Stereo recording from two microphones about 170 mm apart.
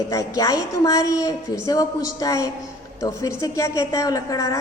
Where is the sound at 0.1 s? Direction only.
20° left (ahead or behind).